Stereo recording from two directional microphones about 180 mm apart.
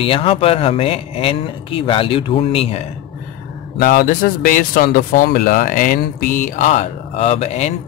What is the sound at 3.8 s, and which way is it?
Speech, 50° left (ahead or behind).